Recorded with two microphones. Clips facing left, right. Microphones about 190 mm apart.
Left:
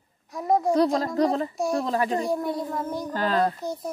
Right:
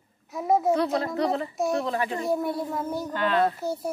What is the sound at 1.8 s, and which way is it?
Speech, 35° left (ahead or behind).